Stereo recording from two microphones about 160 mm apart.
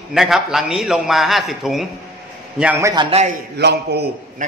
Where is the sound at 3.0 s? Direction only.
40° right (ahead or behind).